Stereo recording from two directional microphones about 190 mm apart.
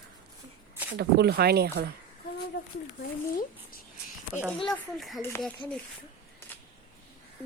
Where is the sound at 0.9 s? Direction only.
55° right (ahead or behind).